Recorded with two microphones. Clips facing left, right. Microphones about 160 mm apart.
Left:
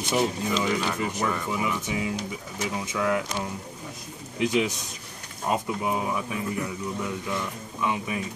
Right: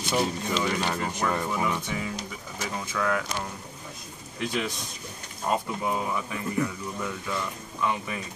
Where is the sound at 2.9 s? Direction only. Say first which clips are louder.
Left 2 dB; 15° left (ahead or behind).